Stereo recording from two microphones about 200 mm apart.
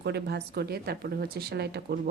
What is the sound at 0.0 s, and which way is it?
Speech, 55° right (ahead or behind).